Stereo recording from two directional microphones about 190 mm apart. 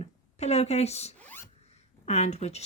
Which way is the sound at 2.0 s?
35° left (ahead or behind).